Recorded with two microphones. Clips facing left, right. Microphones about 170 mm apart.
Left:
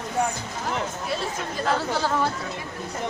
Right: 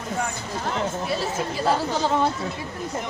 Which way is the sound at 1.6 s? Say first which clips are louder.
Right 1 dB; 15° right (ahead or behind).